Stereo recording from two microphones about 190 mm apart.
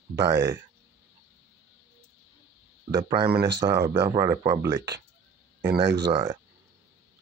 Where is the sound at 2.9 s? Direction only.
20° right (ahead or behind).